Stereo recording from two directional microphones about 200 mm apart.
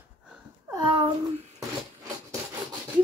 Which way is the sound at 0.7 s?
20° right (ahead or behind).